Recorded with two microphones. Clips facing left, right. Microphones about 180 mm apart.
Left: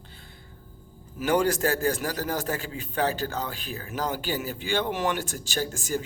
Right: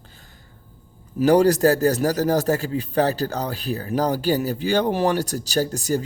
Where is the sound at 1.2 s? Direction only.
35° right (ahead or behind).